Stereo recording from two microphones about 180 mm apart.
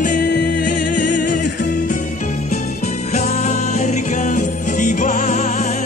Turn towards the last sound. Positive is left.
turn(degrees=40)  # may be behind; listen again after turning